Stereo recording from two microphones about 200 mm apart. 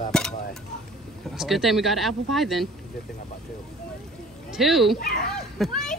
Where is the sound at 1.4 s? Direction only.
Centre (ahead or behind).